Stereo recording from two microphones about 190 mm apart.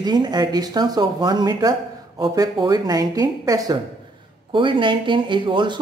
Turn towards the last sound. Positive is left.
turn(degrees=-25)  # may be behind; listen again after turning